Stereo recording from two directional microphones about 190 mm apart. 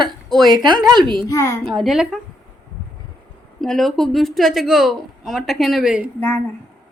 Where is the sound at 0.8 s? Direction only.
Centre (ahead or behind).